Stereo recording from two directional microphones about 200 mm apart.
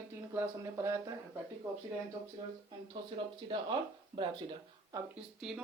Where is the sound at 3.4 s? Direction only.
25° right (ahead or behind).